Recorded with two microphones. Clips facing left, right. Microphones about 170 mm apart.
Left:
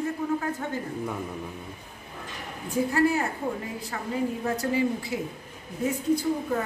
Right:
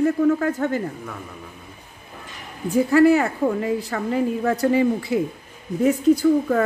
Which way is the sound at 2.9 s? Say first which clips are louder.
Right 10 dB; 90° right.